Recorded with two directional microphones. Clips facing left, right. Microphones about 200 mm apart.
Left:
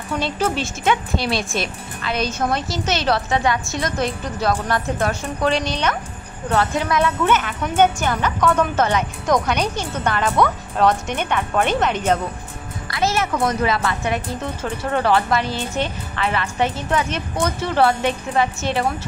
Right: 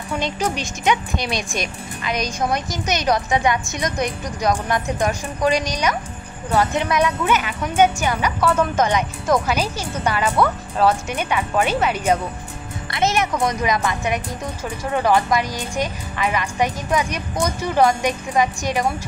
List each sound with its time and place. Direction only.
0.1 s a child's voice: 15° right (ahead or behind)